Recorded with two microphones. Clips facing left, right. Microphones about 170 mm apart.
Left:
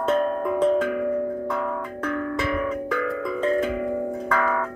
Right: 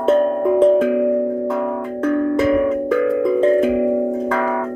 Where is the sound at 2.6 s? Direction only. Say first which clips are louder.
Right 9 dB; 25° right (ahead or behind).